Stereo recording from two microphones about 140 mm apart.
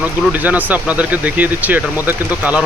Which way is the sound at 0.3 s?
10° right (ahead or behind).